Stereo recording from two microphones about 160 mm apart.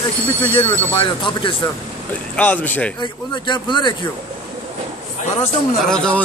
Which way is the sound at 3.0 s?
30° left (ahead or behind).